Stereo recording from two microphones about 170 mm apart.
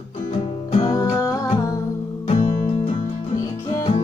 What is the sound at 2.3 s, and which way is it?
Music, 25° left (ahead or behind).